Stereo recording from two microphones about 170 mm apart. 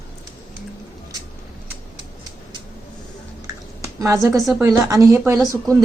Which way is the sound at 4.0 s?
15° right (ahead or behind).